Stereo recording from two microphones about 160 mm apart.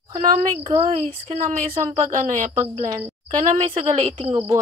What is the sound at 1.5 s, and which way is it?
Speech, 50° right (ahead or behind).